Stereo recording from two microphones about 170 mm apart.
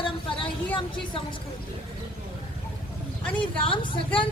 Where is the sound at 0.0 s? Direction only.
30° left (ahead or behind).